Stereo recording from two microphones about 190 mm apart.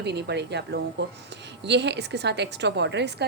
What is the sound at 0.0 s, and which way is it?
A woman's voice, 60° right (ahead or behind).